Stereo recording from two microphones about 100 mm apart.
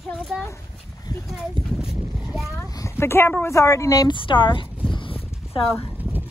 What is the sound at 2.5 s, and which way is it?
Speech, 30° left (ahead or behind).